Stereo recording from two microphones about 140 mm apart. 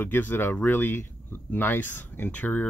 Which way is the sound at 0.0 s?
15° left (ahead or behind).